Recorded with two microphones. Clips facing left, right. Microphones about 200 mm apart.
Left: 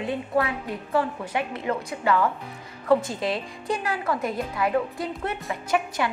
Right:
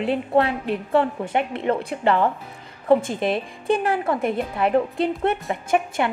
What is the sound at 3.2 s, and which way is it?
Speech, 55° right (ahead or behind).